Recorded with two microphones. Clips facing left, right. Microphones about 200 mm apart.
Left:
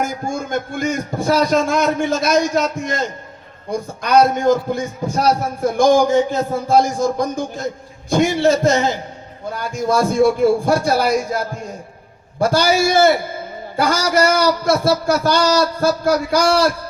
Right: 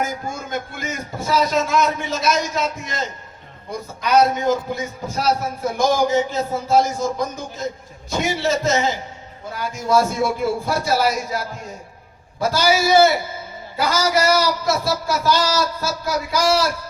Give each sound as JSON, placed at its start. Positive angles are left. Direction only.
{"t": 0.0, "sound": "a man's voice", "side_deg": 50}
{"t": 12.4, "sound": "a man's voice", "side_deg": 50}